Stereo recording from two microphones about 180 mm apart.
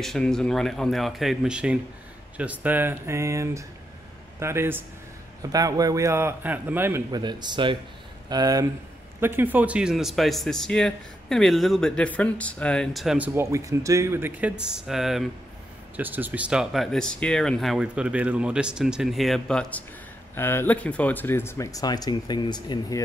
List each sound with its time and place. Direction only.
0.0 s a man's voice: centre (ahead or behind)
7.1 s speech: 25° right (ahead or behind); by 13.3 s centre (ahead or behind)
13.3 s a man's voice: 15° right (ahead or behind); by 23.0 s 20° left (ahead or behind)